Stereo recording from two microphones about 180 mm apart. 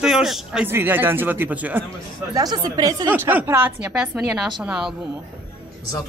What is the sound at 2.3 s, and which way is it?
Speech, 20° right (ahead or behind).